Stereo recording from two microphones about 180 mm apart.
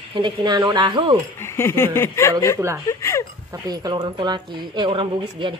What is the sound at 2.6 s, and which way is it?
Speech, 15° right (ahead or behind).